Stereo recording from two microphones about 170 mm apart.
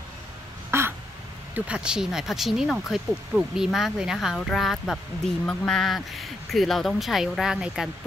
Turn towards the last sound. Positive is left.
turn(degrees=-5)  # may be behind; listen again after turning